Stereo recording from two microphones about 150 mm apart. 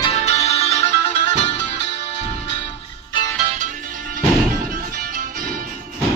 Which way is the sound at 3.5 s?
60° right (ahead or behind).